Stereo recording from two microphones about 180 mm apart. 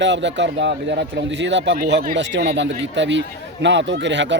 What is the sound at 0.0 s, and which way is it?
A man's voice, 85° right.